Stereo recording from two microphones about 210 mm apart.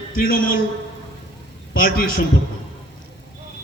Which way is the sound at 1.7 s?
45° left (ahead or behind).